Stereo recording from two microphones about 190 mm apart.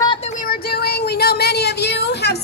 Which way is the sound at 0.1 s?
35° left (ahead or behind).